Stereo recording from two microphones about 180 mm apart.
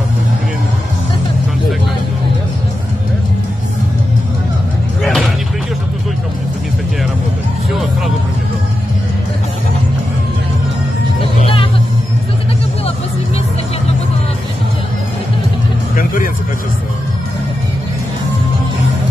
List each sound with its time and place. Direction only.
5.0 s a sound: centre (ahead or behind)
7.7 s music: centre (ahead or behind)
11.3 s music: 30° left (ahead or behind)